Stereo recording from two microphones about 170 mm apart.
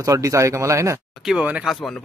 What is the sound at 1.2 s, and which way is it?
Speech, 5° right (ahead or behind).